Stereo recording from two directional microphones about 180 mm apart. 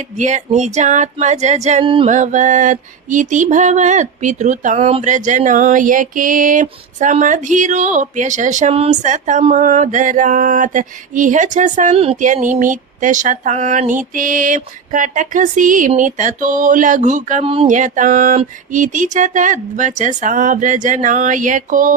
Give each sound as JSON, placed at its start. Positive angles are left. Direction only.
{"t": 0.2, "sound": "female singing", "side_deg": -40}
{"t": 2.0, "sound": "music", "side_deg": -45}
{"t": 17.5, "sound": "female singing", "side_deg": -30}
{"t": 17.7, "sound": "music", "side_deg": -45}